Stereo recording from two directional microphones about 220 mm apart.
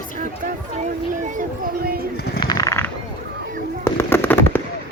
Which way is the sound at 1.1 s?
35° right (ahead or behind).